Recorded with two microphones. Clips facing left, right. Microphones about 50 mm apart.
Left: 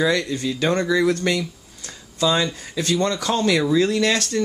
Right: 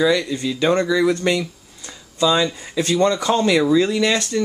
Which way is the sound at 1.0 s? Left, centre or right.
Centre.